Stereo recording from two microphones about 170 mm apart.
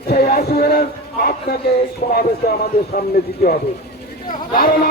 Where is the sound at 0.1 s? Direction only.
65° left (ahead or behind).